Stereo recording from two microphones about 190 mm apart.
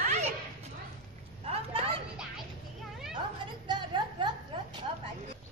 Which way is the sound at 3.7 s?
25° right (ahead or behind).